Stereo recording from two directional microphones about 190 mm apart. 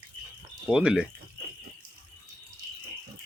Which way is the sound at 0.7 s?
5° right (ahead or behind).